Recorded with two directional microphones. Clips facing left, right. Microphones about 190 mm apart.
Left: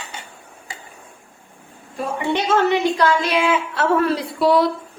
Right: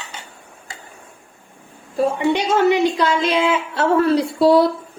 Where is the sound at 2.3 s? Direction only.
15° right (ahead or behind).